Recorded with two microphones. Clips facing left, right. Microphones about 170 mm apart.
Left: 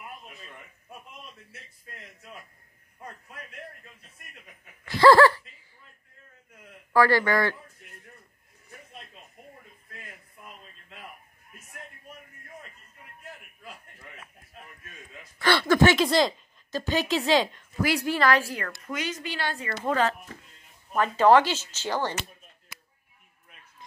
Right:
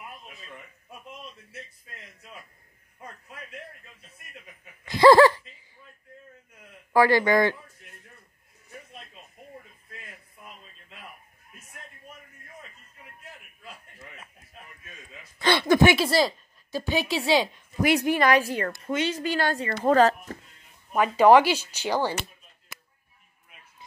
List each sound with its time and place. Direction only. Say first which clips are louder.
4.8 s a sound: right 2 dB; 15° right (ahead or behind)
6.9 s a woman's voice: right 2 dB; 15° right (ahead or behind)
15.3 s a woman's voice: right 1 dB; 15° right (ahead or behind)
19.2 s a woman's voice: right 6 dB; 45° right (ahead or behind)
20.9 s a woman's voice: right 2 dB; 15° right (ahead or behind)